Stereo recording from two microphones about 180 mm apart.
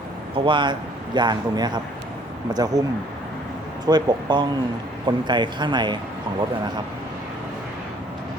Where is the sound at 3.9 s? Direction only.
25° right (ahead or behind).